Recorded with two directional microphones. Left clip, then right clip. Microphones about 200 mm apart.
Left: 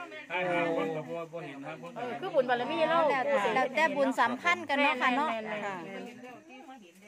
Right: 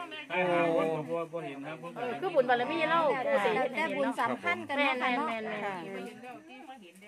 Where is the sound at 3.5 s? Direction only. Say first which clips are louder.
Left 3 dB; 45° left (ahead or behind).